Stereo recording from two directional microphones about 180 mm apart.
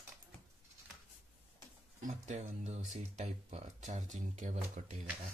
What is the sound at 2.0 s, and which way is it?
Speech, 40° right (ahead or behind).